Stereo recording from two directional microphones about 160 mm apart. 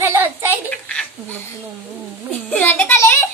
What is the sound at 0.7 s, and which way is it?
Speech, 5° left (ahead or behind).